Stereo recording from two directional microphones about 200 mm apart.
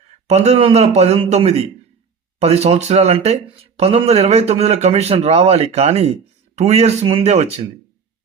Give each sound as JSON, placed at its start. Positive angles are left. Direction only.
{"t": 0.3, "sound": "speech", "side_deg": -35}